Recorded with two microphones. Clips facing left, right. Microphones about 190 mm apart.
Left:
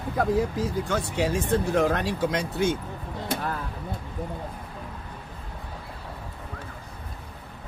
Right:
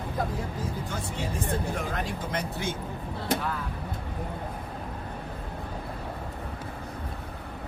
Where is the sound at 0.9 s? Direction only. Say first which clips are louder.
Left 8 dB; 80° left.